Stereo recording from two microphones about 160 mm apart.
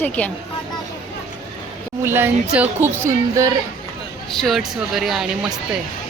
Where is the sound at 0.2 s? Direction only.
10° left (ahead or behind).